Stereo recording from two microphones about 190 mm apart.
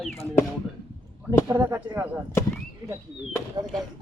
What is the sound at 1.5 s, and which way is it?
Speech, 15° right (ahead or behind).